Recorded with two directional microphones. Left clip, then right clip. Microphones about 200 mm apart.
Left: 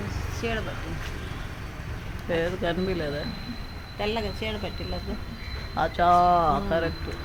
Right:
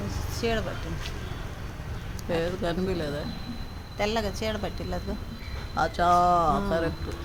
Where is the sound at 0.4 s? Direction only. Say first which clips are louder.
Right 2 dB; 50° right (ahead or behind).